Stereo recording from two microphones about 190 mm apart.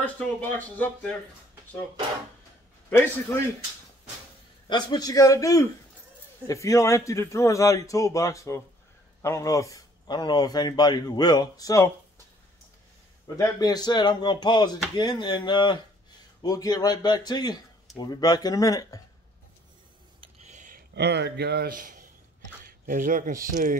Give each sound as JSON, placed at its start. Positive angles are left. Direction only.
{"t": 0.0, "sound": "a man's voice", "side_deg": 10}
{"t": 4.6, "sound": "a man's voice", "side_deg": 20}
{"t": 13.4, "sound": "speech", "side_deg": 20}
{"t": 20.2, "sound": "scissors", "side_deg": -35}
{"t": 20.9, "sound": "a man's voice", "side_deg": -60}